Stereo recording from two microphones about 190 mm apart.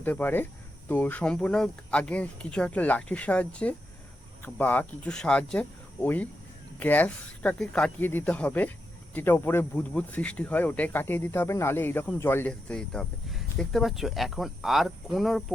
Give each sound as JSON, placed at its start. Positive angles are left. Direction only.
{"t": 0.0, "sound": "speech", "side_deg": 10}